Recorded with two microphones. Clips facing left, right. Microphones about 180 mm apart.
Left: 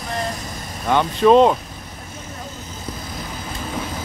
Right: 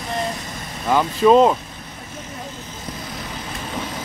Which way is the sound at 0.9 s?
5° right (ahead or behind).